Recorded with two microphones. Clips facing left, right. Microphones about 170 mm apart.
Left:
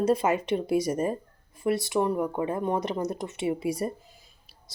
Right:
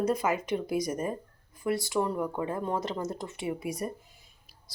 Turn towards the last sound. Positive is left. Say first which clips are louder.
# left 2 dB
turn(degrees=25)  # may be behind; listen again after turning